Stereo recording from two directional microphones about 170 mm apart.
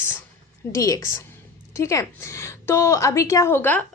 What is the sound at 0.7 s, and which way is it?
A woman's voice, 20° left (ahead or behind).